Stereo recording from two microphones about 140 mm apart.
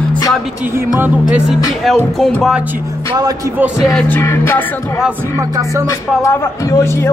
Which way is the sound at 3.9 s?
15° left (ahead or behind).